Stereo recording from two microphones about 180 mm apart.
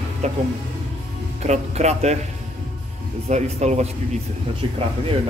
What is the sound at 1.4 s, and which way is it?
Speech, 40° right (ahead or behind).